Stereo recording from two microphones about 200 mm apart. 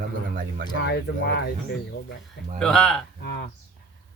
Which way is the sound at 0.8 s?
60° left (ahead or behind).